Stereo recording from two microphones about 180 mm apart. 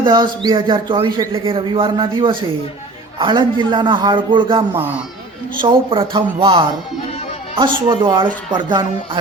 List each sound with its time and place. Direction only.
0.0 s speech: 25° right (ahead or behind)
5.9 s speech: 30° right (ahead or behind)